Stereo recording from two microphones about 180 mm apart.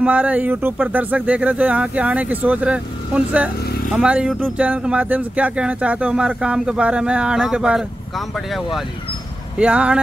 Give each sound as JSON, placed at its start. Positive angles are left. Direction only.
{"t": 0.0, "sound": "speech", "side_deg": -10}